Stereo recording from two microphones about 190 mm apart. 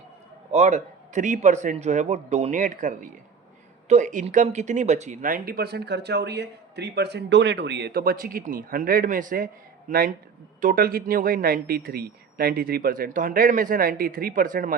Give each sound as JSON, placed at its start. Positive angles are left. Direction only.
{"t": 0.5, "sound": "a man's voice", "side_deg": -35}